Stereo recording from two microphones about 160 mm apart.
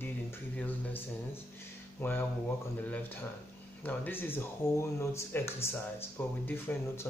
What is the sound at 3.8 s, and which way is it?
Speech, 10° left (ahead or behind).